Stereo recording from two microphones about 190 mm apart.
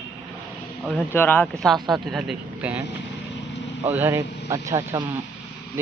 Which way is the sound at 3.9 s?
10° right (ahead or behind).